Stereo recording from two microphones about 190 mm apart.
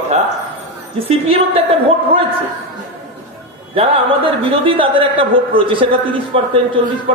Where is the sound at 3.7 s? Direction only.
30° right (ahead or behind).